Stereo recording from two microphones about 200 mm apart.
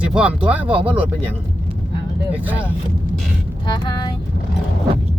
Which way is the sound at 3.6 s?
20° left (ahead or behind).